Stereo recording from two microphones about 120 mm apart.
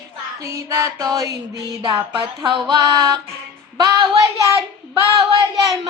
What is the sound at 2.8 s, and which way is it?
Music, 30° right (ahead or behind).